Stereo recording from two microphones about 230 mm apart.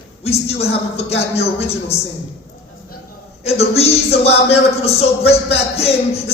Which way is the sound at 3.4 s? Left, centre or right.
Left.